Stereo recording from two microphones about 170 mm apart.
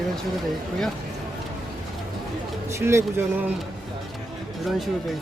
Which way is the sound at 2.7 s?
15° right (ahead or behind).